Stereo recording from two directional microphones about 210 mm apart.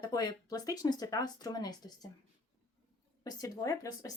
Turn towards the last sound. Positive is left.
turn(degrees=15)  # may be behind; listen again after turning